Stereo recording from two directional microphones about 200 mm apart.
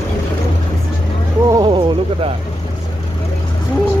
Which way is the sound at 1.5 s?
20° right (ahead or behind).